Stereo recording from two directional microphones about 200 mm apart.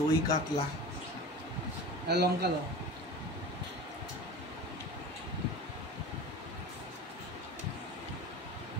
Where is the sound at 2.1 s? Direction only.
55° right (ahead or behind).